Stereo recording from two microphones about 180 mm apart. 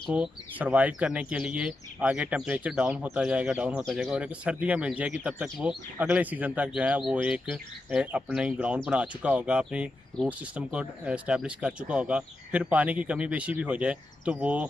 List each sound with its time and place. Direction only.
0.0 s speech: 5° right (ahead or behind)